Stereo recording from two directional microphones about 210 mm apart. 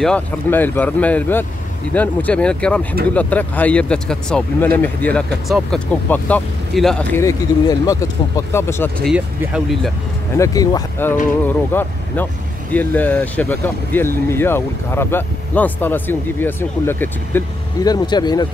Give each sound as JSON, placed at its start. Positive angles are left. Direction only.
{"t": 0.0, "sound": "speech", "side_deg": 5}
{"t": 9.0, "sound": "speech", "side_deg": 0}
{"t": 10.3, "sound": "speech", "side_deg": 15}